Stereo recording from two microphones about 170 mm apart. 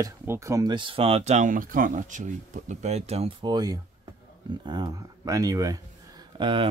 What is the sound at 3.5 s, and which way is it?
Speech, 25° right (ahead or behind).